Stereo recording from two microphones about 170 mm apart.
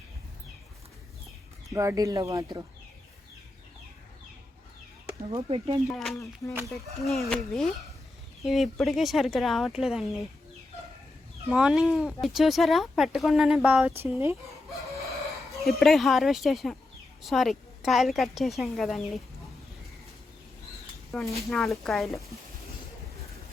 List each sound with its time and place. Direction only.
1.7 s speech: 20° right (ahead or behind)
5.3 s speech: 30° right (ahead or behind)
5.9 s speech: centre (ahead or behind)
11.4 s speech: 5° right (ahead or behind)
14.0 s speech: 15° right (ahead or behind)
15.6 s speech: centre (ahead or behind)
21.1 s speech: centre (ahead or behind)